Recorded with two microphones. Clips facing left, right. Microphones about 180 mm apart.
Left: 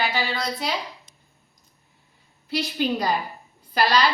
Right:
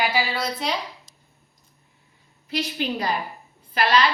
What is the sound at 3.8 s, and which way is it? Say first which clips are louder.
Speech: even; 35° left (ahead or behind).